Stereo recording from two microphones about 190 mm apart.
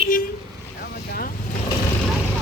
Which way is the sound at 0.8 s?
55° left (ahead or behind).